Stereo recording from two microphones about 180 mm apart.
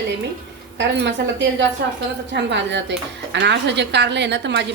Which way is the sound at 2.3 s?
75° right (ahead or behind).